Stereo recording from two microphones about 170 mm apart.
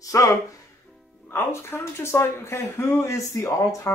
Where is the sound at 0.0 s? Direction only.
20° left (ahead or behind).